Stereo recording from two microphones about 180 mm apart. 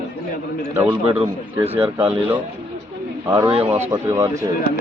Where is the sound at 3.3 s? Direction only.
30° right (ahead or behind).